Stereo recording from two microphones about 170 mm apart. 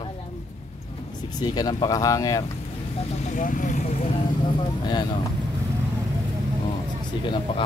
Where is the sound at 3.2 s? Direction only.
45° left (ahead or behind).